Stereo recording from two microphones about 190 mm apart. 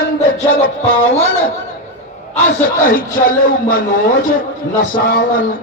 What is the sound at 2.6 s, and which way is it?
A man's voice, 50° left (ahead or behind).